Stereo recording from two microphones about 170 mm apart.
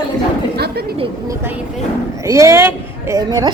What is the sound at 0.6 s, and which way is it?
Speech, 70° right (ahead or behind).